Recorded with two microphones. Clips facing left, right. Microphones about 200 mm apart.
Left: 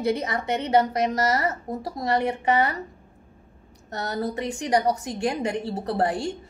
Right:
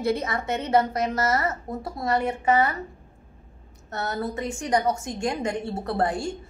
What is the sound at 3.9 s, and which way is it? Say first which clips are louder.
A woman's voice: left 1 dB; 35° left (ahead or behind).